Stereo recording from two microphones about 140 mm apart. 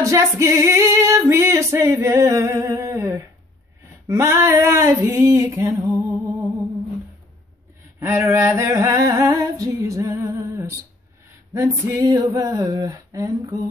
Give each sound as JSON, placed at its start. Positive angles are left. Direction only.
{"t": 0.0, "sound": "female singing", "side_deg": -20}
{"t": 8.0, "sound": "a sound", "side_deg": -20}
{"t": 11.5, "sound": "female singing", "side_deg": -20}